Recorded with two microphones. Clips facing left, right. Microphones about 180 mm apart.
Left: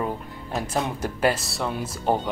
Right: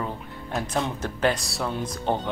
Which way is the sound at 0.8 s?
10° left (ahead or behind).